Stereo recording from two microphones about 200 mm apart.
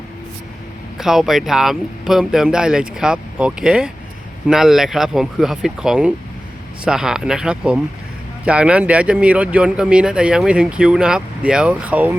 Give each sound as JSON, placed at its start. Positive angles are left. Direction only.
{"t": 0.9, "sound": "speech", "side_deg": 0}